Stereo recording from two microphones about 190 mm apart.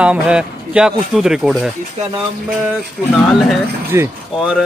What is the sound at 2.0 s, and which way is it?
Speech, 35° right (ahead or behind).